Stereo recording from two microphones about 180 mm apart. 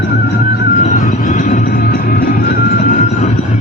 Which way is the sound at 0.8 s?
45° left (ahead or behind).